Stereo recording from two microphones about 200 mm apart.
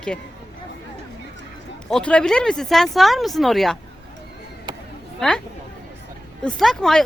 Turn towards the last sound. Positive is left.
turn(degrees=0)  # may be behind; listen again after turning